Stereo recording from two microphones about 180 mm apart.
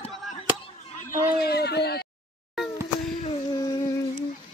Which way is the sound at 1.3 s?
60° left (ahead or behind).